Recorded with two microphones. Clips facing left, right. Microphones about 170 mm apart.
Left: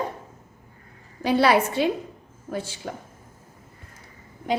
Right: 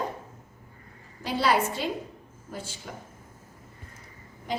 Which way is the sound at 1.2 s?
65° left (ahead or behind).